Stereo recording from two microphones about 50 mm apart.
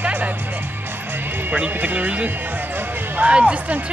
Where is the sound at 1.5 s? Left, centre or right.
Right.